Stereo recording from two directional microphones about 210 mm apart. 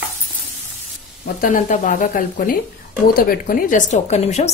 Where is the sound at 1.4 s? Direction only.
40° left (ahead or behind).